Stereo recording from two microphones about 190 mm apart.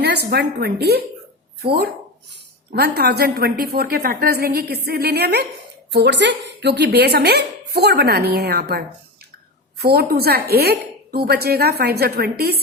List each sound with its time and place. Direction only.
0.0 s speech: 60° right (ahead or behind)
2.7 s speech: 55° right (ahead or behind)